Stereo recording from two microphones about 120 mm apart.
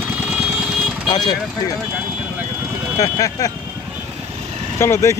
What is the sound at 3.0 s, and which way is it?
Speech, 30° left (ahead or behind).